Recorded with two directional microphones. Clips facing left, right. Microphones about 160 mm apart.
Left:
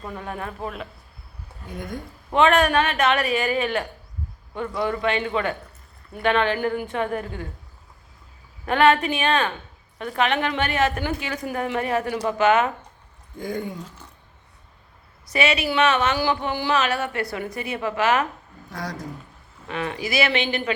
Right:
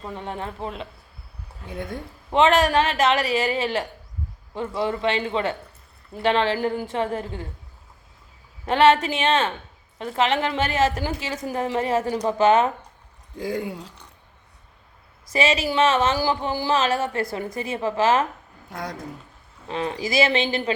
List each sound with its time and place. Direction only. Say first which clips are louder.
0.0 s a woman's voice: right 1 dB; 25° right (ahead or behind)
8.6 s a woman's voice: right 1 dB; 25° right (ahead or behind)
13.5 s speech: right 1 dB; 90° right
15.4 s a woman's voice: right 1 dB; 30° right (ahead or behind)
19.6 s a woman's voice: right 1 dB; 30° right (ahead or behind)